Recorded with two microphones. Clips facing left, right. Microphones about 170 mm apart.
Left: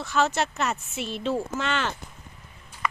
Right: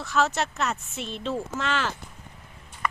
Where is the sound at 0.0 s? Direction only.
Centre (ahead or behind).